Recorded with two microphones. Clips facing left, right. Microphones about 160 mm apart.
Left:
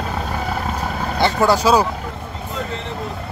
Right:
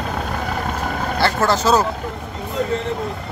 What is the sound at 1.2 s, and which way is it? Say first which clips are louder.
Speech: left 2 dB; 15° left (ahead or behind).